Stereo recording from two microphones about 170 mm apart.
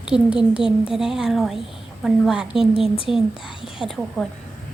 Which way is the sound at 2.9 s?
30° left (ahead or behind).